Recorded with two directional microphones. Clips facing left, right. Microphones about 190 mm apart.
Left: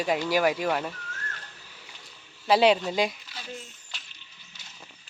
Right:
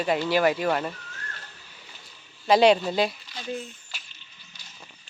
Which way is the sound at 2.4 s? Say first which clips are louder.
Right 2 dB; 5° left (ahead or behind).